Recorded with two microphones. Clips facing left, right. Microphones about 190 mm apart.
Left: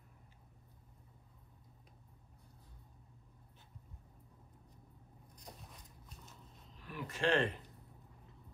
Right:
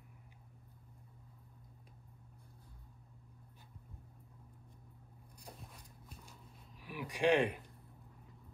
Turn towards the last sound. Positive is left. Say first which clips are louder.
# right 3 dB
turn(degrees=-15)  # may be behind; listen again after turning